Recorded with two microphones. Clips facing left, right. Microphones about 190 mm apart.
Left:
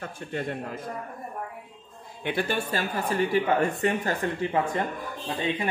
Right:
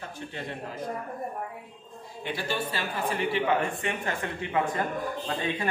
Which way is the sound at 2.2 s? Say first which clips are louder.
Left 4 dB; 55° left (ahead or behind).